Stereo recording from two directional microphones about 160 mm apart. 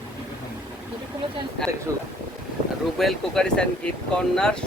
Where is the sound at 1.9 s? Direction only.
15° right (ahead or behind).